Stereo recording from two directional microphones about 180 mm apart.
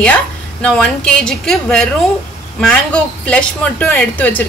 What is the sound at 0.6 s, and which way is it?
A woman's voice, 5° left (ahead or behind).